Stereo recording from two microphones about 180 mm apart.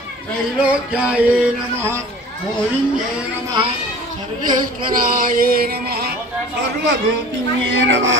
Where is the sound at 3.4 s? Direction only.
25° right (ahead or behind).